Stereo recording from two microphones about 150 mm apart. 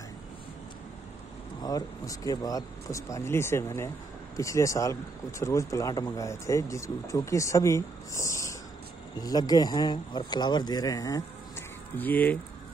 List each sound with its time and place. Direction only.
1.6 s speech: 25° left (ahead or behind)
12.0 s speech: 10° left (ahead or behind)